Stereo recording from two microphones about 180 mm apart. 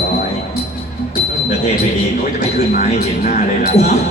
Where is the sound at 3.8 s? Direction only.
15° left (ahead or behind).